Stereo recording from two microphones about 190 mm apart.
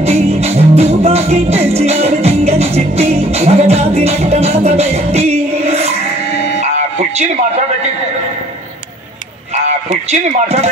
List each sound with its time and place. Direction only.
0.0 s music: 35° right (ahead or behind)
10.2 s speech: 35° right (ahead or behind)